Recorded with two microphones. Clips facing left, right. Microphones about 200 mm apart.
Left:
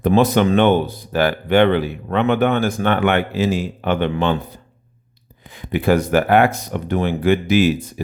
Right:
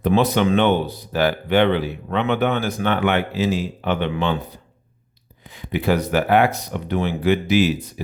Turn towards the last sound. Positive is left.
turn(degrees=50)  # may be behind; listen again after turning